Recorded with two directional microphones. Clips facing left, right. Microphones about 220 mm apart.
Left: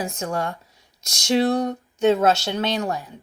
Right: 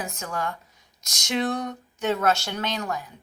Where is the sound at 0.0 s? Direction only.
30° left (ahead or behind).